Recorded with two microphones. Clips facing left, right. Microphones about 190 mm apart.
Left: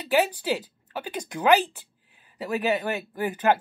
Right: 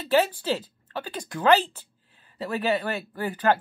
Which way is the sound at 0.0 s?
15° left (ahead or behind).